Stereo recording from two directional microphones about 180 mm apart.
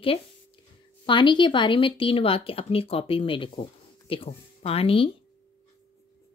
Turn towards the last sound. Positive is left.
turn(degrees=30)  # may be behind; listen again after turning